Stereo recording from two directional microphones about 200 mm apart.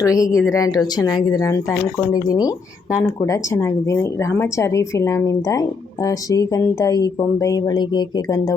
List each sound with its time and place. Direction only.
0.0 s speech: 15° left (ahead or behind)